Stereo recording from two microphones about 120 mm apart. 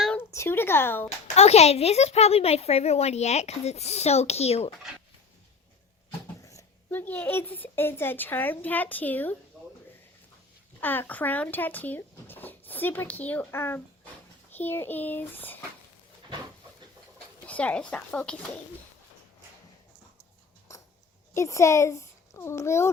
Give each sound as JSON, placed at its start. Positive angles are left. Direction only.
{"t": 0.3, "sound": "speech", "side_deg": 20}
{"t": 1.4, "sound": "a woman's voice", "side_deg": 60}
{"t": 6.4, "sound": "a sound", "side_deg": 25}
{"t": 6.9, "sound": "a woman's voice", "side_deg": 15}
{"t": 10.8, "sound": "a woman's voice", "side_deg": 15}
{"t": 17.4, "sound": "a woman's voice", "side_deg": 10}
{"t": 21.3, "sound": "speech", "side_deg": 25}